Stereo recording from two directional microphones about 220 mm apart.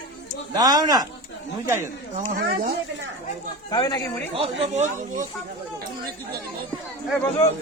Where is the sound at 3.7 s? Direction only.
20° left (ahead or behind).